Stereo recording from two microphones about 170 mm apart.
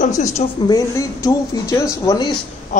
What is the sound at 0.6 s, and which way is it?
Speech, 20° left (ahead or behind).